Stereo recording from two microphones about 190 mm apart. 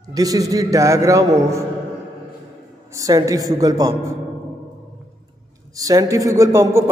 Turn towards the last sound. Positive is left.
turn(degrees=-15)  # may be behind; listen again after turning